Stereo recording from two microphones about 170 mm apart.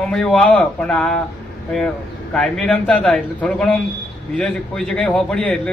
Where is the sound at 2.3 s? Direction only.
5° left (ahead or behind).